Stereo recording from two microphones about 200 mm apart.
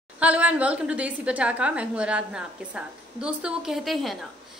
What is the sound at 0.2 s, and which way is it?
A woman's voice, 5° right (ahead or behind).